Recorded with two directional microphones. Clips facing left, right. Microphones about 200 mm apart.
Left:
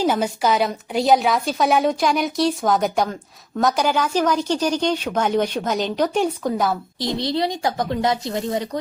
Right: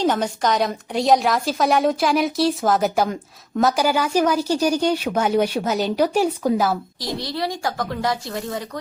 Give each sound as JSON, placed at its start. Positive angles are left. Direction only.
{"t": 0.0, "sound": "a woman's voice", "side_deg": 10}
{"t": 7.0, "sound": "a woman's voice", "side_deg": 20}